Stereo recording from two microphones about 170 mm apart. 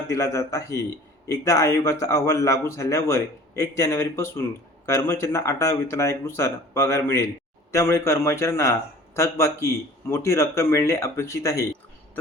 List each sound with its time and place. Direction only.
0.1 s speech: 20° left (ahead or behind)